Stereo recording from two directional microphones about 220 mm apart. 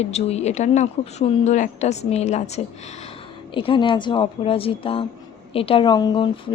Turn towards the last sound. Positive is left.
turn(degrees=20)  # may be behind; listen again after turning